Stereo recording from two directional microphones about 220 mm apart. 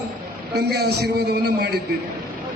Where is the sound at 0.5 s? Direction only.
45° right (ahead or behind).